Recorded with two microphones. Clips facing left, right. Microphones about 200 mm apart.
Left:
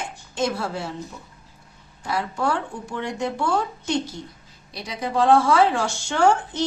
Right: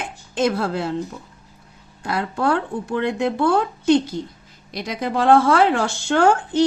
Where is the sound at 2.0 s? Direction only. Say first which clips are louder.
Right 3 dB; 60° right (ahead or behind).